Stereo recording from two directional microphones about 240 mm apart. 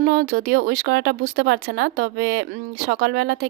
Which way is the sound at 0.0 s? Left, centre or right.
Right.